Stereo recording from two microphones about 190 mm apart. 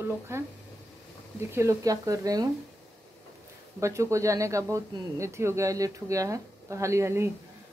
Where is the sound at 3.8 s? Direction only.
15° right (ahead or behind).